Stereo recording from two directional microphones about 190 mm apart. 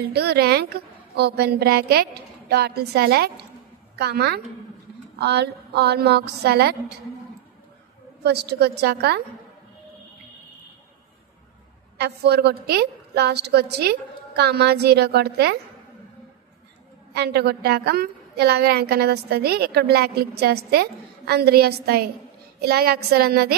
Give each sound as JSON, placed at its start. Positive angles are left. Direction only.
{"t": 0.1, "sound": "a woman's voice", "side_deg": -55}
{"t": 8.2, "sound": "a woman's voice", "side_deg": -60}
{"t": 12.0, "sound": "a woman's voice", "side_deg": -60}
{"t": 17.1, "sound": "a woman's voice", "side_deg": -60}